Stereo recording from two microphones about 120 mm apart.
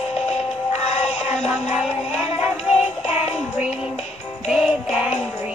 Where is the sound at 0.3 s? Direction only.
60° left (ahead or behind).